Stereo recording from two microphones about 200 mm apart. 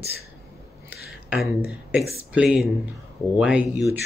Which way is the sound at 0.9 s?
5° right (ahead or behind).